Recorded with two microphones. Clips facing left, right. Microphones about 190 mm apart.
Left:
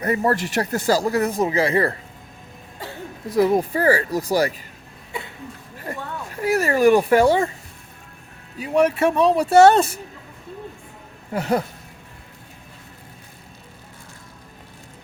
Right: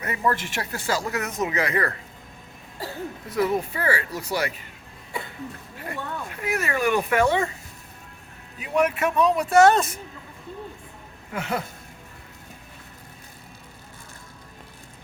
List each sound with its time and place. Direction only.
0.0 s speech: 35° left (ahead or behind)
3.3 s speech: 35° left (ahead or behind)
5.7 s a sound: 40° left (ahead or behind)
8.5 s speech: 35° left (ahead or behind)
11.3 s speech: 40° left (ahead or behind)